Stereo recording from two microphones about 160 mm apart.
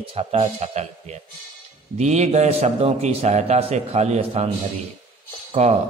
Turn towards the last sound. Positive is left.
turn(degrees=-45)  # may be behind; listen again after turning